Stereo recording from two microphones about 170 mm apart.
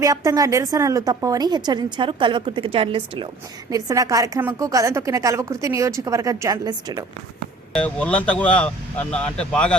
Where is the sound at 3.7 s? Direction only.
20° right (ahead or behind).